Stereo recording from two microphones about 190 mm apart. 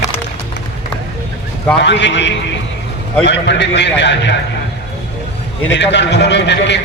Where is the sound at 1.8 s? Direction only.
70° left (ahead or behind).